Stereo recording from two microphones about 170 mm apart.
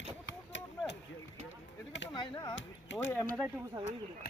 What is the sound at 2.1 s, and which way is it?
Chop, 25° left (ahead or behind).